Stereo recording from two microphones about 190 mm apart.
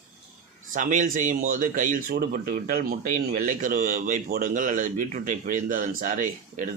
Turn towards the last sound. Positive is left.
turn(degrees=-45)  # may be behind; listen again after turning